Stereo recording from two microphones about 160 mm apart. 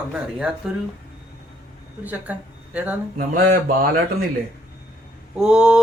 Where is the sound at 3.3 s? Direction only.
70° right (ahead or behind).